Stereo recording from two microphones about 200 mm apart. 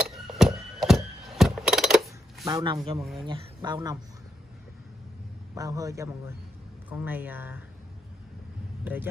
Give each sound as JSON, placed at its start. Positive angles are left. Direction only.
{"t": 0.1, "sound": "horse", "side_deg": 0}
{"t": 0.7, "sound": "a sound", "side_deg": 0}
{"t": 2.4, "sound": "speech", "side_deg": -20}
{"t": 5.5, "sound": "a man's voice", "side_deg": -15}
{"t": 8.8, "sound": "speech", "side_deg": -10}